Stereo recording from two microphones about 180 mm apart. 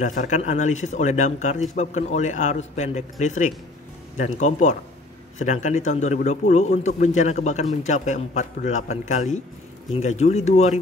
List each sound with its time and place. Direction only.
0.0 s speech: 45° left (ahead or behind)